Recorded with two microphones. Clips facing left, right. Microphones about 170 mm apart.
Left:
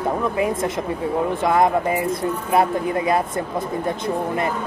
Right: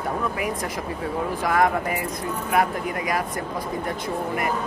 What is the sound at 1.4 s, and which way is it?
Speech, 25° left (ahead or behind).